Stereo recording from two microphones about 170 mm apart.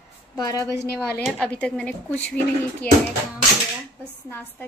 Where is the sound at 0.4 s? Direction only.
20° left (ahead or behind).